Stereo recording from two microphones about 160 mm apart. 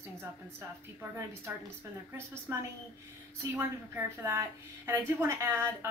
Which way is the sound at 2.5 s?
15° right (ahead or behind).